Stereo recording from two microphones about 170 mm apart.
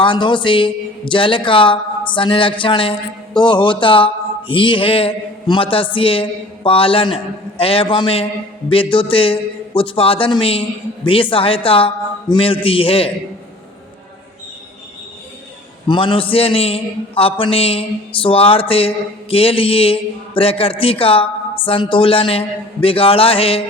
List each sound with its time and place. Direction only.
0.0 s a man's voice: 30° left (ahead or behind)
15.9 s a man's voice: 30° left (ahead or behind)